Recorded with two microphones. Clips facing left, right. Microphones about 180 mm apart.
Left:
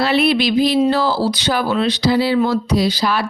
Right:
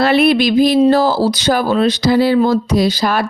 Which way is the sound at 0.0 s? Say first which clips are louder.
Right 4 dB; 50° right (ahead or behind).